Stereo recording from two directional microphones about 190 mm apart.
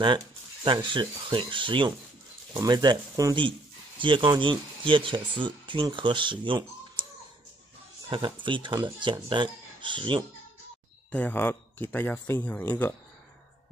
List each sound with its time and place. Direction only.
0.7 s speech: 25° right (ahead or behind)
6.4 s computer keyboard: 25° right (ahead or behind)
8.1 s speech: 25° right (ahead or behind)
11.1 s speech: 10° left (ahead or behind)